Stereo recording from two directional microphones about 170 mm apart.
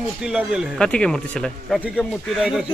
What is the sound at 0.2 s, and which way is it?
Speech, 5° right (ahead or behind).